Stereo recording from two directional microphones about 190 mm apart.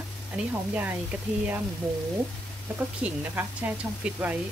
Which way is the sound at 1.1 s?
10° right (ahead or behind).